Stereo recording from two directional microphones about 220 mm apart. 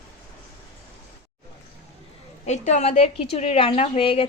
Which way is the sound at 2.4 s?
30° left (ahead or behind).